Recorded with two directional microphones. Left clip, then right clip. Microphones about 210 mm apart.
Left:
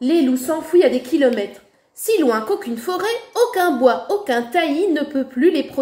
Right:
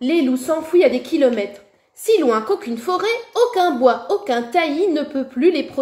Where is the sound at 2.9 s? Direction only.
10° left (ahead or behind).